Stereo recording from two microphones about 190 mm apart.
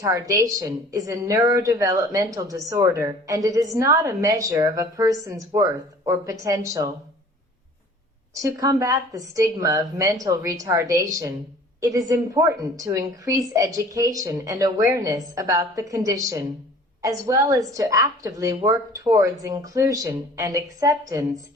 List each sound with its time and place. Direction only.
0.0 s a woman's voice: 15° right (ahead or behind)
8.4 s a woman's voice: 15° right (ahead or behind)